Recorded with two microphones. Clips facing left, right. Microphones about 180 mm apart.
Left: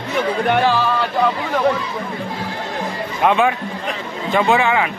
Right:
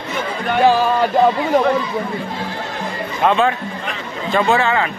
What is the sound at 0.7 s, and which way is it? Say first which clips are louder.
Music: right 4 dB; 45° right (ahead or behind).